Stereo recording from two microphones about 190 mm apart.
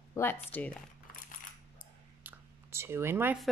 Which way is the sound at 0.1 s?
10° left (ahead or behind).